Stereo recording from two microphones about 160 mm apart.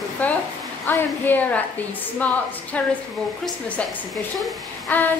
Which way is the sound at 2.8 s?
10° left (ahead or behind).